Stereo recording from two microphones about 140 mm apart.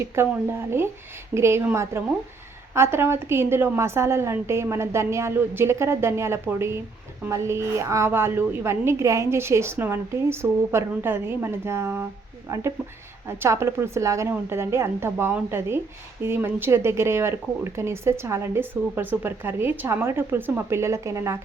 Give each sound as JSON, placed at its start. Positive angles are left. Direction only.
{"t": 0.2, "sound": "a woman's voice", "side_deg": -15}
{"t": 13.2, "sound": "speech", "side_deg": -20}